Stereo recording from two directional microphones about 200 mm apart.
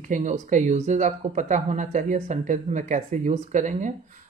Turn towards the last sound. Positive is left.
turn(degrees=-40)  # may be behind; listen again after turning